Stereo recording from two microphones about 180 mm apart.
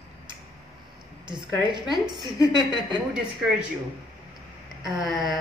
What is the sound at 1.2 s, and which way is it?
A woman's voice, 25° right (ahead or behind).